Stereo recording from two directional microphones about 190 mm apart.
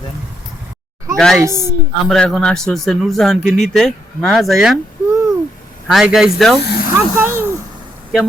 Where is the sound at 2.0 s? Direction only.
Centre (ahead or behind).